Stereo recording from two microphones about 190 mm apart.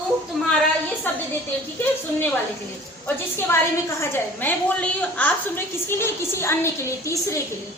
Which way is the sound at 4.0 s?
10° left (ahead or behind).